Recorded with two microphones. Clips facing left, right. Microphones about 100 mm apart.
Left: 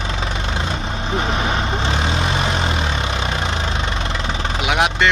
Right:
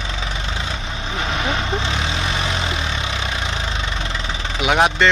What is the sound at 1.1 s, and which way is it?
Vehicle, 35° left (ahead or behind).